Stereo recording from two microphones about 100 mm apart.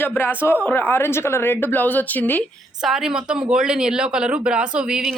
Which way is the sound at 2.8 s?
5° right (ahead or behind).